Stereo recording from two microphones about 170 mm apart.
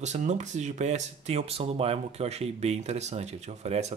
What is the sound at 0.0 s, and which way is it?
A man's voice, 45° right (ahead or behind).